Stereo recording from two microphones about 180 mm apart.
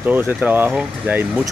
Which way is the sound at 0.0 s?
10° right (ahead or behind).